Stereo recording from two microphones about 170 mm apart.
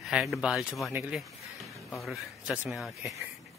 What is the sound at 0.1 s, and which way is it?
Speech, 5° right (ahead or behind).